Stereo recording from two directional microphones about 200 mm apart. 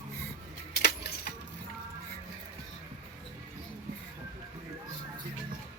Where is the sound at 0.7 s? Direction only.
50° left (ahead or behind).